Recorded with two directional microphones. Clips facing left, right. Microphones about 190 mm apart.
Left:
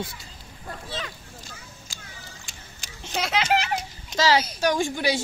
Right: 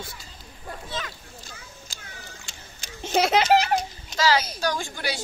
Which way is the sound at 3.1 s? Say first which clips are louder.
Right 5 dB; 45° right (ahead or behind).